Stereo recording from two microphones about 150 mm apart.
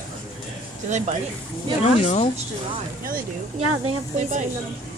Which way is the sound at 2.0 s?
45° left (ahead or behind).